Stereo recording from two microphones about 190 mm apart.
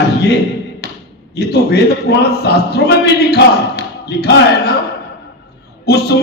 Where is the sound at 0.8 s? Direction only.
60° left (ahead or behind).